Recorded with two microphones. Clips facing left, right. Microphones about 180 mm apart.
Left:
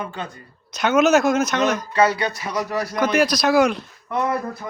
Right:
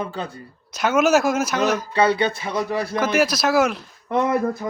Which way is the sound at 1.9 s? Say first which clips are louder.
Right 1 dB; 30° right (ahead or behind).